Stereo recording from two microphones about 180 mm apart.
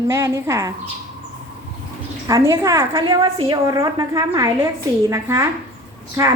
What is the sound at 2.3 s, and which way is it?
A woman's voice, 15° right (ahead or behind).